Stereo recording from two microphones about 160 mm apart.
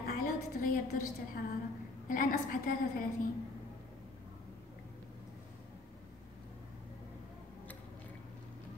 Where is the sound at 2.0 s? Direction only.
60° left (ahead or behind).